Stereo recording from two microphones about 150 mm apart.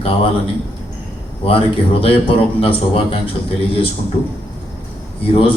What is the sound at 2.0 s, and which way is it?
A man's voice, 40° left (ahead or behind).